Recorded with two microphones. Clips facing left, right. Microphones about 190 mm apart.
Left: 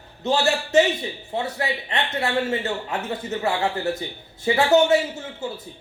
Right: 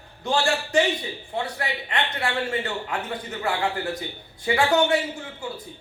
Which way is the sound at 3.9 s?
25° left (ahead or behind).